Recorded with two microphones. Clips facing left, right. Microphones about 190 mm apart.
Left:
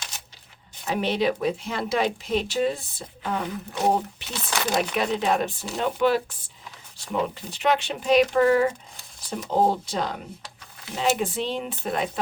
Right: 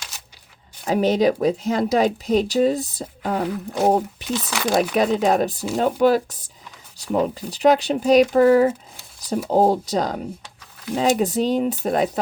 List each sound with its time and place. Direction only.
0.9 s speech: 40° right (ahead or behind)
4.4 s speech: centre (ahead or behind)
4.7 s speech: 40° right (ahead or behind)